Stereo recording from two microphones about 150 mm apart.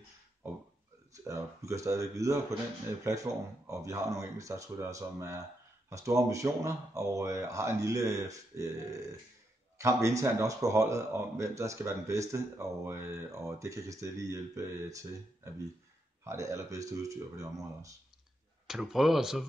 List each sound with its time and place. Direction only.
1.1 s speech: 20° right (ahead or behind)
18.7 s speech: centre (ahead or behind)